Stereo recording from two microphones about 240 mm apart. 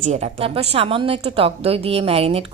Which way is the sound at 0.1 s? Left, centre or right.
Right.